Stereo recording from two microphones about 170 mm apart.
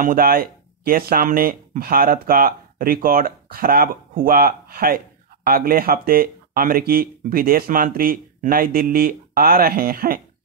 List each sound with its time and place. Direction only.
0.0 s speech: 60° right (ahead or behind)